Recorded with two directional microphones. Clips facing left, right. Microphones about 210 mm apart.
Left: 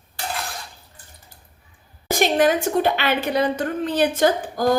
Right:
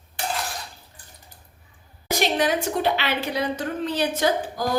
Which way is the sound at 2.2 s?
50° left (ahead or behind).